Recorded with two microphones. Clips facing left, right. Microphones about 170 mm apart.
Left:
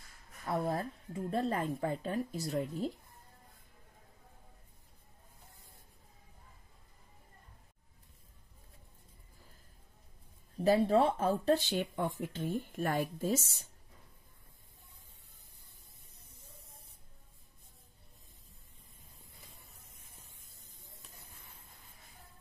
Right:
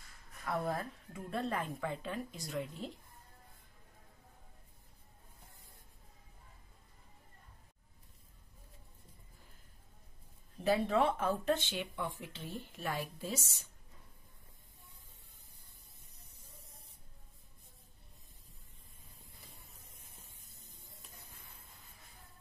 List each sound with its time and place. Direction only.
0.5 s speech: 30° left (ahead or behind)
10.6 s speech: 35° left (ahead or behind)